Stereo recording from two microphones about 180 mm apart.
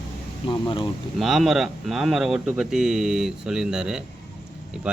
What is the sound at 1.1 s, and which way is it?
A man's voice, centre (ahead or behind).